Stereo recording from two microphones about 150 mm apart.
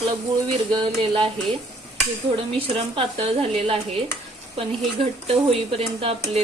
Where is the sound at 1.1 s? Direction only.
35° right (ahead or behind).